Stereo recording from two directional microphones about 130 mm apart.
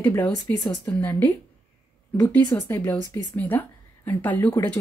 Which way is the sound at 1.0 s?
15° left (ahead or behind).